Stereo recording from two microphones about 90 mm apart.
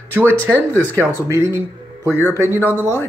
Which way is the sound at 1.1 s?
35° right (ahead or behind).